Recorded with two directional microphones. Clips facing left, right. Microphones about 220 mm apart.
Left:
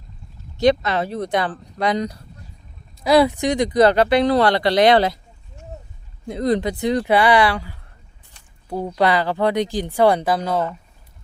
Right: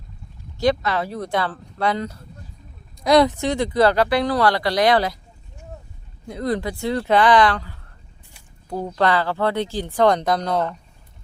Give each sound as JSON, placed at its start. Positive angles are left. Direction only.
{"t": 0.6, "sound": "speech", "side_deg": 20}
{"t": 3.0, "sound": "speech", "side_deg": 5}
{"t": 6.2, "sound": "speech", "side_deg": 20}